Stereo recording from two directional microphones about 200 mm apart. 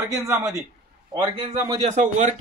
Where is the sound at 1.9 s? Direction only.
35° right (ahead or behind).